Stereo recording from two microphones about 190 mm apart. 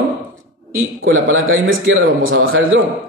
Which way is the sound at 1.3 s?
90° right.